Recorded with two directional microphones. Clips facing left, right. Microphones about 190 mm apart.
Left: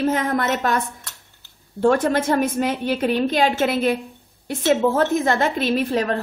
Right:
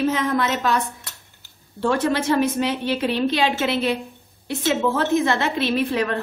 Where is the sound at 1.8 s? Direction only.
50° left (ahead or behind).